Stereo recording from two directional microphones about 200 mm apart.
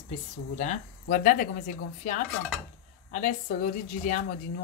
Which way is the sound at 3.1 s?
40° left (ahead or behind).